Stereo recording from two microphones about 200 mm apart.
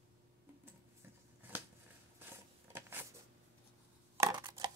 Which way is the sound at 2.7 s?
10° right (ahead or behind).